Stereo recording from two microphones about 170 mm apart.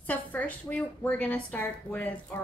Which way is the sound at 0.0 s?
10° left (ahead or behind).